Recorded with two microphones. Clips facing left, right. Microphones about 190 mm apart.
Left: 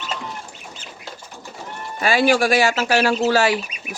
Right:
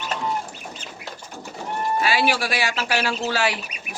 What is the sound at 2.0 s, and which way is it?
Speech, 50° left (ahead or behind).